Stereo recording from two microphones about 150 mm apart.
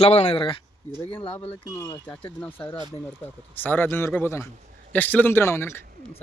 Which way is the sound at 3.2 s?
15° left (ahead or behind).